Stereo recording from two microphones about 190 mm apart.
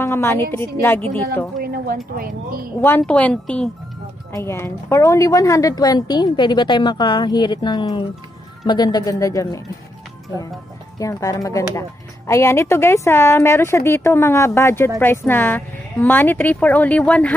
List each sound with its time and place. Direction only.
0.0 s a woman's voice: 15° left (ahead or behind)
1.6 s speech: 50° right (ahead or behind)
2.8 s a woman's voice: 10° left (ahead or behind)
11.0 s a woman's voice: 15° left (ahead or behind)